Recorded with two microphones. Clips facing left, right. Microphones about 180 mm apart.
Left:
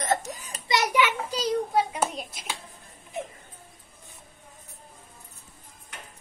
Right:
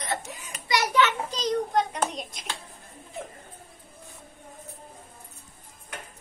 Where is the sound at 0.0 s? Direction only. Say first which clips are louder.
Left 5 dB; 40° left (ahead or behind).